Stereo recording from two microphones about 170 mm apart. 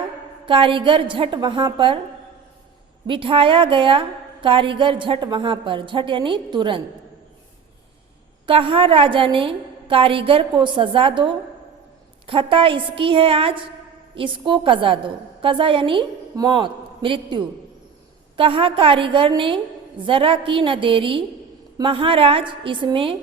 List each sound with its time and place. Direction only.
0.4 s a woman's voice: 30° right (ahead or behind)
3.1 s a woman's voice: 30° right (ahead or behind)
8.4 s a woman's voice: 30° right (ahead or behind)